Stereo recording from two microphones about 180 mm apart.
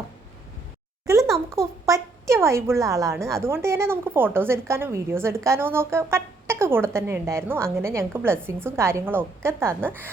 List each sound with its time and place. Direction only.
1.0 s a sound: 15° right (ahead or behind)
1.3 s a child's voice: centre (ahead or behind)
1.9 s a woman's voice: 15° right (ahead or behind)